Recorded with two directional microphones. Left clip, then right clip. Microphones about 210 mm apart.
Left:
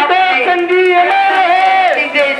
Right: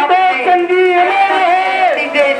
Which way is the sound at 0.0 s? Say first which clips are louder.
Even; 5° right (ahead or behind).